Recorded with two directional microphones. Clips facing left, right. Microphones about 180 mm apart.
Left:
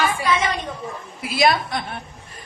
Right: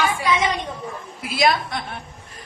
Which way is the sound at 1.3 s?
Centre (ahead or behind).